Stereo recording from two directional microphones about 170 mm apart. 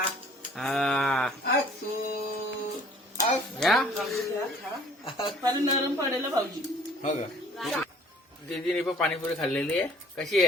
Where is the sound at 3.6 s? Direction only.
Centre (ahead or behind).